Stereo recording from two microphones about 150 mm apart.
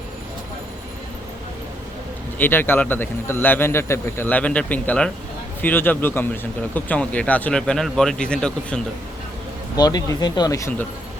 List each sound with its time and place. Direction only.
2.4 s speech: 15° left (ahead or behind)
9.7 s speech: 25° left (ahead or behind)